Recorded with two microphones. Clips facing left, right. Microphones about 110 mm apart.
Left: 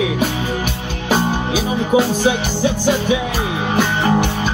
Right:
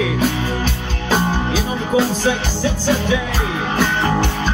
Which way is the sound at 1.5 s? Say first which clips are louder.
Left 2 dB; 15° left (ahead or behind).